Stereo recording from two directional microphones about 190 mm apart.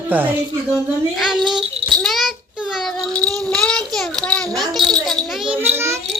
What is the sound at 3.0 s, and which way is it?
Speech, 5° left (ahead or behind).